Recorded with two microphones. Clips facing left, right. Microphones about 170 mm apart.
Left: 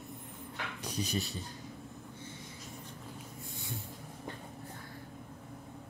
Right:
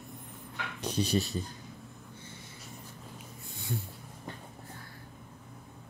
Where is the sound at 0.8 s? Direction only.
30° right (ahead or behind).